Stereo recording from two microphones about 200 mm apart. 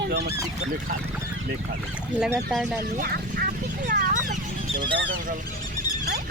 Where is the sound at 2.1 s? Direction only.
5° right (ahead or behind).